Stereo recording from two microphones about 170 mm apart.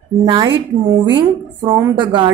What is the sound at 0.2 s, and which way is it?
A woman's voice, 30° right (ahead or behind).